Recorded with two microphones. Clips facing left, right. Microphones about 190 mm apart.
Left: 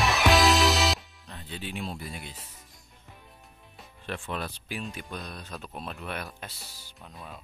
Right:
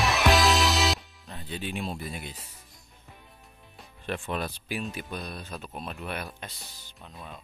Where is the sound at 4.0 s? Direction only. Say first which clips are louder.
Right 3 dB; 15° right (ahead or behind); by 7.3 s centre (ahead or behind).